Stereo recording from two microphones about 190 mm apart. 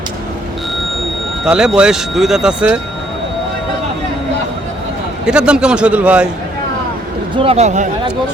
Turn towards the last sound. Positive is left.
turn(degrees=-35)  # may be behind; listen again after turning